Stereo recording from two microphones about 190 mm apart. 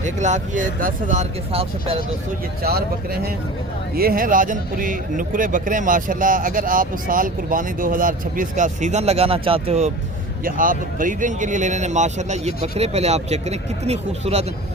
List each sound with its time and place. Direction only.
0.0 s speech: 40° right (ahead or behind)
2.6 s a man's voice: 55° right (ahead or behind); by 9.9 s 35° right (ahead or behind)
10.4 s speech: 45° right (ahead or behind)